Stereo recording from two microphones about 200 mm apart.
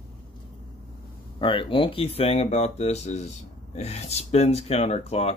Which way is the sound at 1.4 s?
25° left (ahead or behind).